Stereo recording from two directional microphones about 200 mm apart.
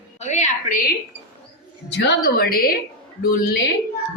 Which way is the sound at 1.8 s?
60° left (ahead or behind).